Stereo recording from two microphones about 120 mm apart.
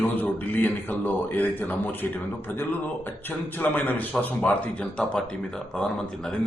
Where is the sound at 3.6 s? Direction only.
15° left (ahead or behind).